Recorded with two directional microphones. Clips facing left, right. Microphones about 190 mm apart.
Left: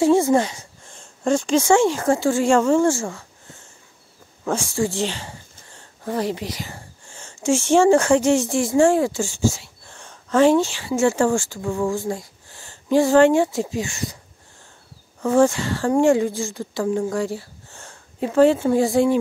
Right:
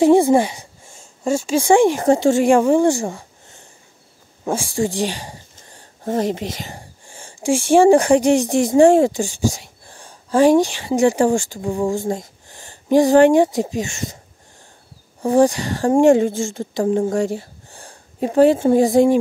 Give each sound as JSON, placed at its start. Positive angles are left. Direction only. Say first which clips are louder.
{"t": 0.0, "sound": "speech", "louder": "right 4 dB", "side_deg": -15}
{"t": 15.2, "sound": "speech", "louder": "right 2 dB", "side_deg": -15}